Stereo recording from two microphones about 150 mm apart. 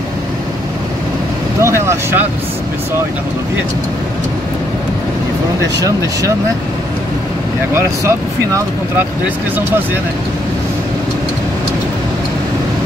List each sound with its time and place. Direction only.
1.6 s vehicle: 20° right (ahead or behind)
5.8 s speech: 20° right (ahead or behind)